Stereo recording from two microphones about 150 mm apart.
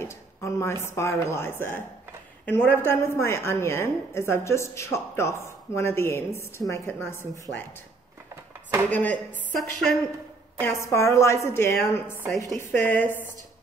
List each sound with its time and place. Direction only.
0.0 s a woman's voice: 20° left (ahead or behind)
7.5 s speech: 45° left (ahead or behind)
8.9 s a woman's voice: 10° left (ahead or behind)
10.6 s a woman's voice: 20° left (ahead or behind)